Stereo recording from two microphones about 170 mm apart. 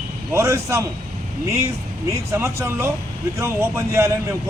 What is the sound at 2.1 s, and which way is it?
A man's voice, 15° right (ahead or behind).